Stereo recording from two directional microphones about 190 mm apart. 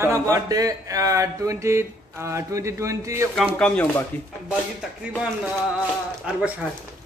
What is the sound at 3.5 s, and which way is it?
Speech, 5° left (ahead or behind).